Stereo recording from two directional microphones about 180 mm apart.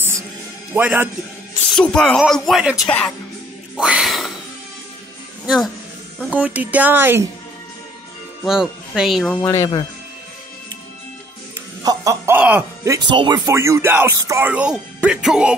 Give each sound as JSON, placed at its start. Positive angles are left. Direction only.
{"t": 0.7, "sound": "speech", "side_deg": -10}
{"t": 1.8, "sound": "speech", "side_deg": 5}
{"t": 3.7, "sound": "a sound", "side_deg": -5}
{"t": 6.3, "sound": "speech", "side_deg": -10}
{"t": 8.5, "sound": "speech", "side_deg": -5}
{"t": 9.3, "sound": "speech", "side_deg": 15}
{"t": 11.8, "sound": "speech", "side_deg": -20}